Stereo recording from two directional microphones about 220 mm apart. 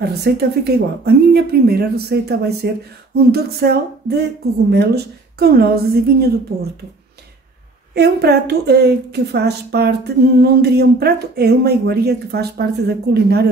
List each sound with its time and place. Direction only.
0.0 s a woman's voice: 45° right (ahead or behind)
7.9 s a woman's voice: 45° right (ahead or behind)